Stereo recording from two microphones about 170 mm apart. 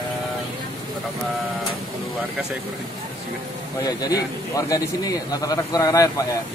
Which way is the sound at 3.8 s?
20° left (ahead or behind).